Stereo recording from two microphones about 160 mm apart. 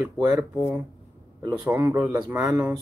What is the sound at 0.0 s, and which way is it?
Speech, 15° right (ahead or behind).